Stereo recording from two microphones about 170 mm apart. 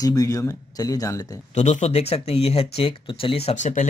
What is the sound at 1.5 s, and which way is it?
Speech, 45° left (ahead or behind).